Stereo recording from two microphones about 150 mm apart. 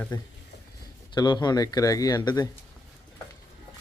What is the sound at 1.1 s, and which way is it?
Speech, 30° left (ahead or behind).